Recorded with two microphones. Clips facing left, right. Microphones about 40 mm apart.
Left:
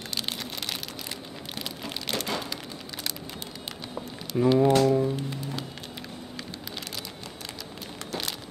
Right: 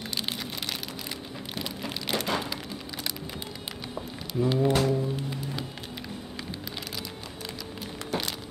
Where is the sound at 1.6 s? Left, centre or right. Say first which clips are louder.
Right 1 dB; centre.